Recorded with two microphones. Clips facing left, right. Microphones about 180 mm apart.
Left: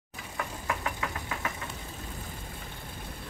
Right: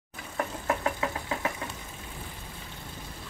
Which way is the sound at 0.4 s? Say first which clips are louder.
Right 5 dB; 35° right (ahead or behind).